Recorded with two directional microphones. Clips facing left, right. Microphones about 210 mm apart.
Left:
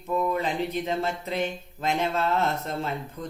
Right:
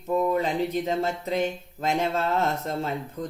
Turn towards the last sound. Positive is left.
turn(degrees=-40)  # may be behind; listen again after turning